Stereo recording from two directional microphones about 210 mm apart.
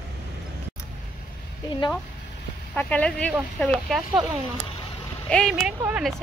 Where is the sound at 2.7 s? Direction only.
5° left (ahead or behind).